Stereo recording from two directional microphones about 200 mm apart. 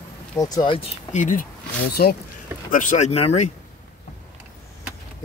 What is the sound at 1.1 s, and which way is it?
Speech, 40° left (ahead or behind).